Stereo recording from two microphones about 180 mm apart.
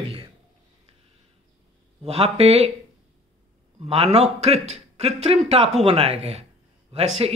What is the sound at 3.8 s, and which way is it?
Speech, 35° right (ahead or behind).